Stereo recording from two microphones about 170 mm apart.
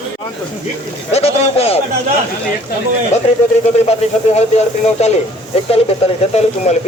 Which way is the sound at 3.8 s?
40° left (ahead or behind).